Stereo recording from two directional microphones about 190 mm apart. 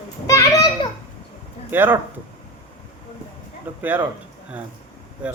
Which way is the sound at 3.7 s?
10° right (ahead or behind).